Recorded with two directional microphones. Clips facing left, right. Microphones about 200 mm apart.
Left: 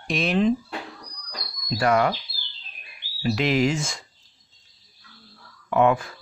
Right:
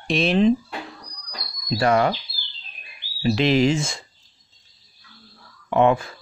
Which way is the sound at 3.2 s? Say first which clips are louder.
Right 3 dB; 25° right (ahead or behind).